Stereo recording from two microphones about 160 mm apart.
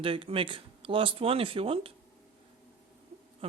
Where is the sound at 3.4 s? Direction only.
35° right (ahead or behind).